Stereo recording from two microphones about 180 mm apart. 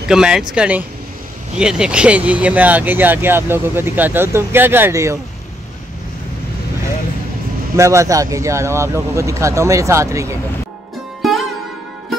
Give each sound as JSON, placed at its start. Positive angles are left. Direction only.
{"t": 0.1, "sound": "speech", "side_deg": -5}
{"t": 7.7, "sound": "speech", "side_deg": -15}
{"t": 11.2, "sound": "music", "side_deg": 0}